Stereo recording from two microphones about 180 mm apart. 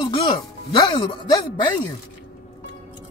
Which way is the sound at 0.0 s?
25° left (ahead or behind).